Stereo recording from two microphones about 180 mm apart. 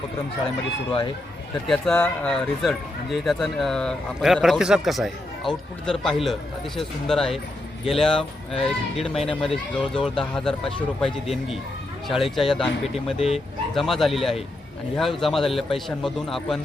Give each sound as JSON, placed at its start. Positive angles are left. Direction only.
{"t": 1.6, "sound": "speech", "side_deg": 5}
{"t": 12.0, "sound": "speech", "side_deg": 0}
{"t": 13.1, "sound": "speech", "side_deg": 35}
{"t": 13.7, "sound": "speech", "side_deg": 0}